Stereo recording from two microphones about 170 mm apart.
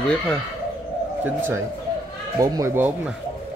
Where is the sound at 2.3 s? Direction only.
20° right (ahead or behind).